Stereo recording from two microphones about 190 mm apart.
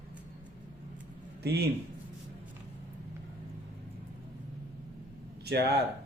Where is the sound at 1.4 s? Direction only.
60° right (ahead or behind).